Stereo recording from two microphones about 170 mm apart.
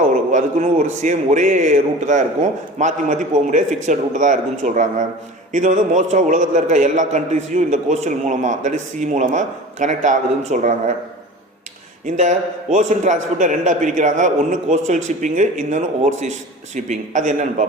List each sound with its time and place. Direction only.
0.3 s a man's voice: 45° right (ahead or behind)
12.0 s a man's voice: 45° right (ahead or behind)